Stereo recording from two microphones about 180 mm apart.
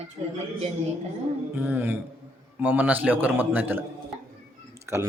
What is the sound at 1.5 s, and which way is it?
A man's voice, 10° right (ahead or behind).